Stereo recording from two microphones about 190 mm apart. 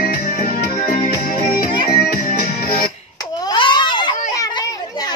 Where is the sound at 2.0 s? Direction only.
45° left (ahead or behind).